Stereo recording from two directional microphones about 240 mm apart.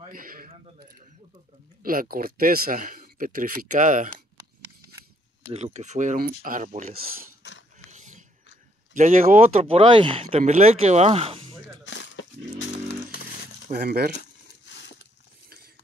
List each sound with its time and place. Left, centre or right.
0.1 s squish: right
1.8 s speech: right
5.5 s speech: right
7.4 s a sound: left
7.9 s biting: right
8.9 s speech: right
11.8 s dog: left
13.7 s speech: right
14.7 s a sound: left